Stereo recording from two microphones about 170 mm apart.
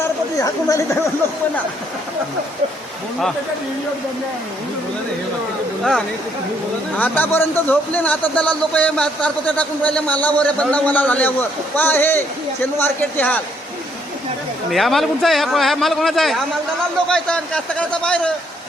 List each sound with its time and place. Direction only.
0.3 s speech: 20° left (ahead or behind)
6.9 s a man's voice: 10° left (ahead or behind)
14.7 s speech: centre (ahead or behind)